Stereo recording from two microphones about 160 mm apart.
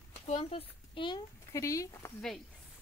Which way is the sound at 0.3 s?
40° left (ahead or behind).